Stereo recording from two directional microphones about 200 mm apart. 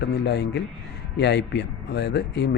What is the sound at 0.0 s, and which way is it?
Speech, 55° left (ahead or behind).